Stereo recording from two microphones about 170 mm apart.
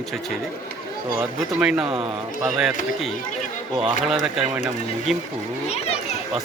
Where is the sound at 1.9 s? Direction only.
30° right (ahead or behind).